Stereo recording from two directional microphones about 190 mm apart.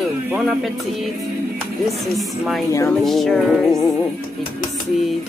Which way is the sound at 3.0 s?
Centre (ahead or behind).